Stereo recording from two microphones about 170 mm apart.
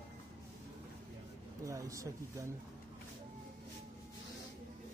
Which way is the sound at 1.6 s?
20° right (ahead or behind).